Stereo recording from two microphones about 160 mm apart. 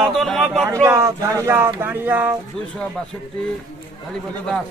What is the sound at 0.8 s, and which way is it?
Speech, 20° right (ahead or behind).